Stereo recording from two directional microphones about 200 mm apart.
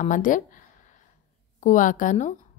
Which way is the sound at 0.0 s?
40° left (ahead or behind).